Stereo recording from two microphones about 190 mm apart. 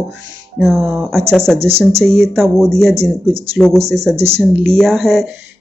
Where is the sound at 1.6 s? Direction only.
30° right (ahead or behind).